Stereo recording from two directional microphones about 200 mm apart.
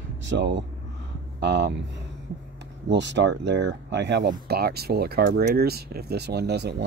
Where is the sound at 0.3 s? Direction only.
65° right (ahead or behind).